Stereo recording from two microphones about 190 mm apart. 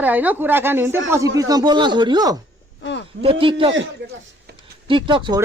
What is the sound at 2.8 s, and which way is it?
Speech, 70° left (ahead or behind).